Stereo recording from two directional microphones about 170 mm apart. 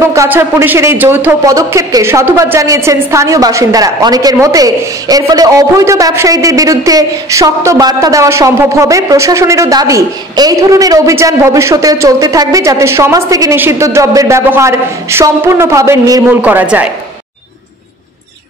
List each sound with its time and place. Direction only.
0.0 s speech: 15° right (ahead or behind)